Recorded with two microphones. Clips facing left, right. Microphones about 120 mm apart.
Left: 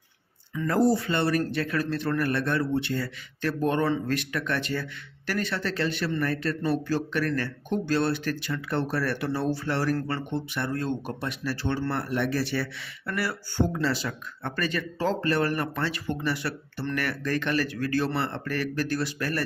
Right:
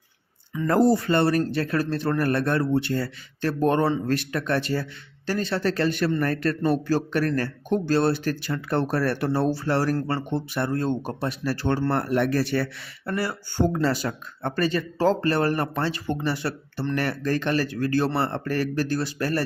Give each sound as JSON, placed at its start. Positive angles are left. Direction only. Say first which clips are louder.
{"t": 0.5, "sound": "speech", "louder": "right 2 dB", "side_deg": -20}
{"t": 0.9, "sound": "a man's voice", "louder": "right 4 dB", "side_deg": -40}
{"t": 13.1, "sound": "speech", "louder": "right 3 dB", "side_deg": -25}
{"t": 13.7, "sound": "a man's voice", "louder": "right 4 dB", "side_deg": -45}